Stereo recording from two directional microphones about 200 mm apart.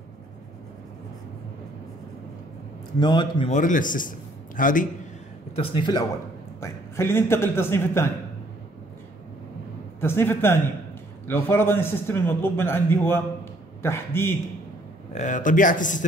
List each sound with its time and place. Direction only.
3.0 s a man's voice: 20° left (ahead or behind)
3.5 s speech: 40° left (ahead or behind)
5.6 s a man's voice: 25° left (ahead or behind)
6.6 s a man's voice: 10° left (ahead or behind)
9.9 s a man's voice: 10° left (ahead or behind)
15.1 s speech: 40° left (ahead or behind)